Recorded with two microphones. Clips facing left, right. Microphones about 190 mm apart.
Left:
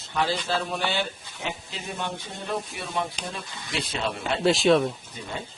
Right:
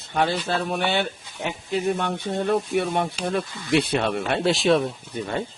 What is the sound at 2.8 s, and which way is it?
Speech, 60° right (ahead or behind).